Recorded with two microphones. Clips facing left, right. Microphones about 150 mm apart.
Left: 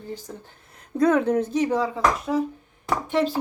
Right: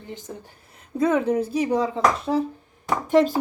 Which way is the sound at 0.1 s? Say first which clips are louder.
Even; 20° right (ahead or behind).